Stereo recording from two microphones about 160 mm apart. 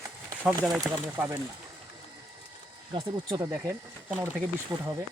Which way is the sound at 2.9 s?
25° right (ahead or behind).